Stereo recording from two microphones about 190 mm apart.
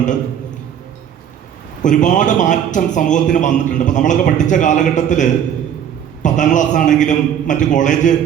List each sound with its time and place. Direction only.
1.8 s a man's voice: 40° left (ahead or behind)